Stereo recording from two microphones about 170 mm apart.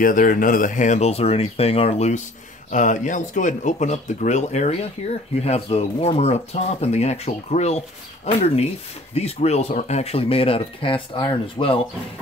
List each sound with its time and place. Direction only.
0.0 s speech: 55° left (ahead or behind)
9.1 s speech: 40° left (ahead or behind)